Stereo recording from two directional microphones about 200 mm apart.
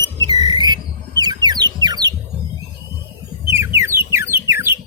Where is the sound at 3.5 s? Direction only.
10° right (ahead or behind).